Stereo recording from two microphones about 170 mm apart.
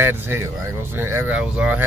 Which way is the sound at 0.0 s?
10° right (ahead or behind).